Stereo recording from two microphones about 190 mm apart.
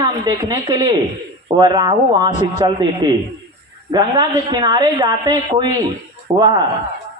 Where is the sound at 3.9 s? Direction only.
20° right (ahead or behind).